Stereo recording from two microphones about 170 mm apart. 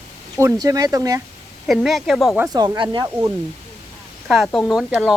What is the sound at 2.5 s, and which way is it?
Speech, 25° right (ahead or behind).